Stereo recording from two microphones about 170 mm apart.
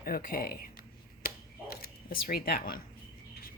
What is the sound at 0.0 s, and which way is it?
Speech, 60° left (ahead or behind).